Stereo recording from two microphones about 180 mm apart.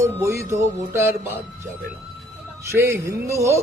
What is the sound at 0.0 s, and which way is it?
Speech, 15° right (ahead or behind).